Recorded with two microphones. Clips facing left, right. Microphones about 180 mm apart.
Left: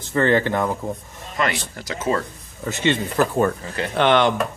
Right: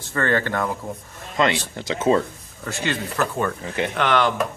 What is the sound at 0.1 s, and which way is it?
Speech, 20° left (ahead or behind).